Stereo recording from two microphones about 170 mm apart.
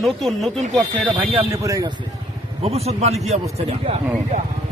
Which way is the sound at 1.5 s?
20° right (ahead or behind).